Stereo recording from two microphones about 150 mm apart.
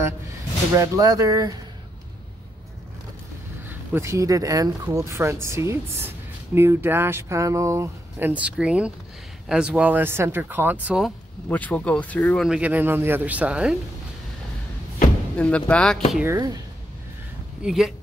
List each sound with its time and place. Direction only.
0.7 s speech: 25° right (ahead or behind)
3.6 s speech: 15° right (ahead or behind)
11.0 s speech: centre (ahead or behind)
15.3 s speech: 10° left (ahead or behind)
16.3 s speech: 25° right (ahead or behind)
17.6 s speech: centre (ahead or behind)